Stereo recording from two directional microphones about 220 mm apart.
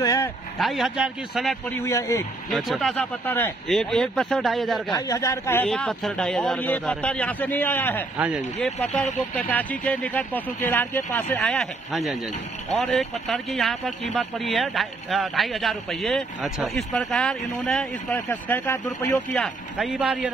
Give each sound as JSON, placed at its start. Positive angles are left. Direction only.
{"t": 0.0, "sound": "speech", "side_deg": 15}
{"t": 0.6, "sound": "speech", "side_deg": 0}
{"t": 1.8, "sound": "speech", "side_deg": 15}
{"t": 2.5, "sound": "speech", "side_deg": 0}
{"t": 4.9, "sound": "speech", "side_deg": 15}
{"t": 8.2, "sound": "speech", "side_deg": -5}
{"t": 8.5, "sound": "speech", "side_deg": 5}